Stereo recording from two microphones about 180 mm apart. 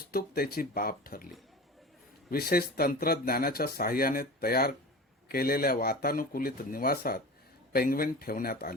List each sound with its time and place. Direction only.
0.1 s speech: 55° left (ahead or behind)
2.3 s speech: 55° left (ahead or behind)